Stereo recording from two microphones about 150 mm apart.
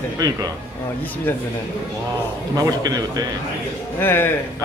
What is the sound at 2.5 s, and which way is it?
Speech, 25° right (ahead or behind).